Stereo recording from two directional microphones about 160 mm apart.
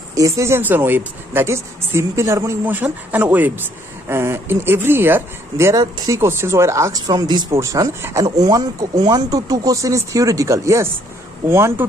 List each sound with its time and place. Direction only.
0.1 s a woman's voice: 20° right (ahead or behind)